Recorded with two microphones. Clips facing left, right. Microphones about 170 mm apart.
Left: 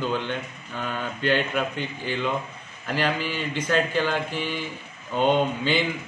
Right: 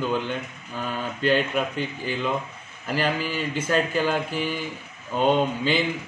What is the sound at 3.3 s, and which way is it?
Speech, 5° right (ahead or behind).